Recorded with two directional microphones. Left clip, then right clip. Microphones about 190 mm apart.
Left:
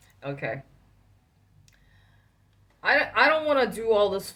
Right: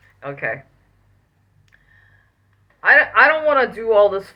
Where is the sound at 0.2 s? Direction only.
40° left (ahead or behind).